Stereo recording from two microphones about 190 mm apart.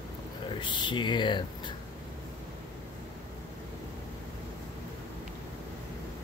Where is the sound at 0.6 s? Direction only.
25° left (ahead or behind).